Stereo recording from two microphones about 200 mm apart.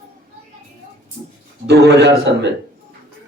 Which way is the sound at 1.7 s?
60° right (ahead or behind).